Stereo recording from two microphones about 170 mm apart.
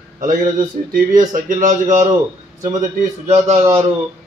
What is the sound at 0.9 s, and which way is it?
Speech, 50° right (ahead or behind).